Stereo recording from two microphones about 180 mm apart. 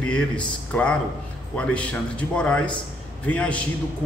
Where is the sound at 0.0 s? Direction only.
5° left (ahead or behind).